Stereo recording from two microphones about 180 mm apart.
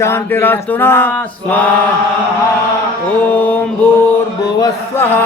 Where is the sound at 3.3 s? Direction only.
10° left (ahead or behind).